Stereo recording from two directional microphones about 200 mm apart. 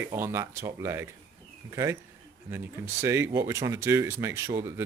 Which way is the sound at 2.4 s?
10° right (ahead or behind).